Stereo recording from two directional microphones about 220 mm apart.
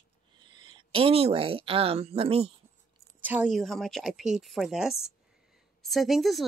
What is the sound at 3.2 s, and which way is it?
A woman's voice, 5° right (ahead or behind).